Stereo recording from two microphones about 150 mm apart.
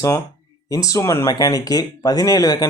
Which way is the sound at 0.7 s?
20° left (ahead or behind).